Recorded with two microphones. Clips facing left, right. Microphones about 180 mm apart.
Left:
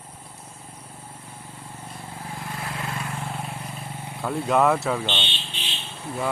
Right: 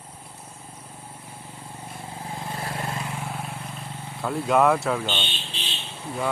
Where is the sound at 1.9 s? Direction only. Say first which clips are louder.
Right 2 dB; 20° right (ahead or behind).